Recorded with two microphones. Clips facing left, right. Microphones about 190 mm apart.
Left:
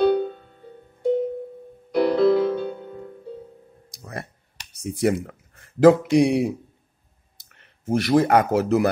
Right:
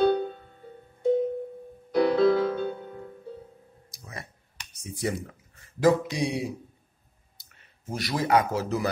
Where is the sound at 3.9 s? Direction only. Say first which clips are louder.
Left 7 dB; 65° left (ahead or behind).